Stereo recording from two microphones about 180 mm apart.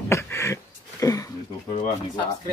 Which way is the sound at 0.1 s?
15° left (ahead or behind).